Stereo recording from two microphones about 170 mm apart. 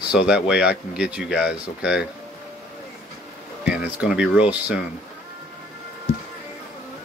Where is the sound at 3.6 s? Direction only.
5° right (ahead or behind).